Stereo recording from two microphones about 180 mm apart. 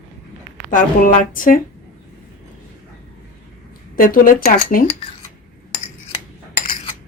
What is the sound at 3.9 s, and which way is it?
Speech, 50° left (ahead or behind).